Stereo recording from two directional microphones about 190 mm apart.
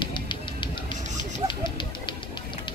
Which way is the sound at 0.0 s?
25° left (ahead or behind).